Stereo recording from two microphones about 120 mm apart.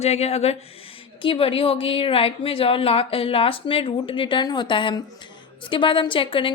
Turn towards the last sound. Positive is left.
turn(degrees=45)  # may be behind; listen again after turning